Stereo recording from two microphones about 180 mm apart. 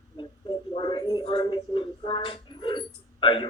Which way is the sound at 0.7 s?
25° left (ahead or behind).